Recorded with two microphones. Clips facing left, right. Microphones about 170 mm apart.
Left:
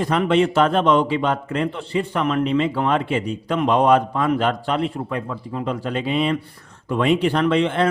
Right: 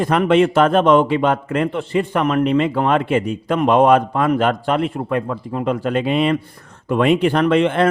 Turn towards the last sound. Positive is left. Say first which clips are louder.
# right 3 dB
turn(degrees=-55)  # may be behind; listen again after turning